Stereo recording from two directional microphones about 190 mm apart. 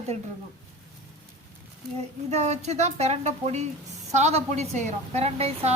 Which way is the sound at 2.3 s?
35° right (ahead or behind).